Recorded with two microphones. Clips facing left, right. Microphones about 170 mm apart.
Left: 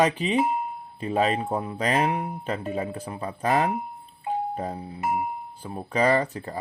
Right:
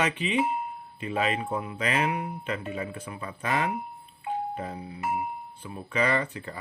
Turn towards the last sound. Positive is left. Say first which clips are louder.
# left 5 dB
turn(degrees=35)  # may be behind; listen again after turning